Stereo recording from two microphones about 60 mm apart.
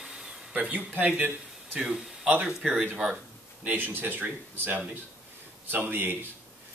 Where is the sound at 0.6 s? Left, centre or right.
Right.